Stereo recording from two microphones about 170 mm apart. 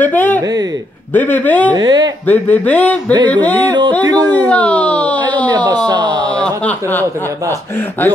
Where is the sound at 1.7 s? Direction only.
25° right (ahead or behind).